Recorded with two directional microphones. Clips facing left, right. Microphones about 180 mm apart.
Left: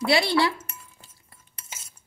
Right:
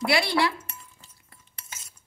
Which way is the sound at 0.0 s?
25° left (ahead or behind).